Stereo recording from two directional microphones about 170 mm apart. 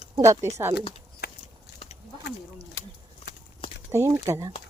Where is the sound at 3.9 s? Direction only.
15° right (ahead or behind).